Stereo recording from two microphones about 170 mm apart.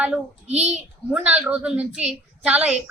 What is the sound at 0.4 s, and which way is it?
Speech, 40° right (ahead or behind).